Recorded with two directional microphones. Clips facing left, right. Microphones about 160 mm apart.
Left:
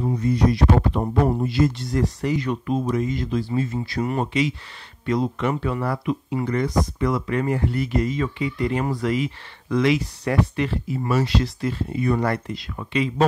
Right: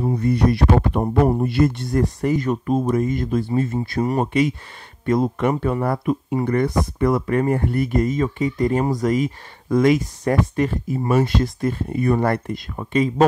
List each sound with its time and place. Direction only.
0.0 s speech: 60° right (ahead or behind)
4.0 s speech: 40° right (ahead or behind)
4.3 s speech: 50° right (ahead or behind)